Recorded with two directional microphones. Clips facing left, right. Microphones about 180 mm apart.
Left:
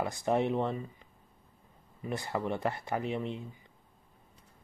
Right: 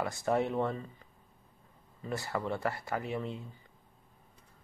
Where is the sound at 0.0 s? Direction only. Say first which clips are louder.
Left 1 dB; 20° left (ahead or behind).